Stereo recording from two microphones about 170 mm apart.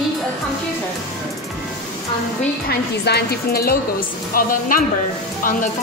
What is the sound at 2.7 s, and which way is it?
A woman's voice, 70° left (ahead or behind).